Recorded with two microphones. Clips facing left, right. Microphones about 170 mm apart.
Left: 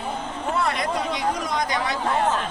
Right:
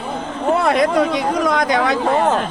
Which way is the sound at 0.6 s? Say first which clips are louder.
Right 10 dB; 70° right (ahead or behind).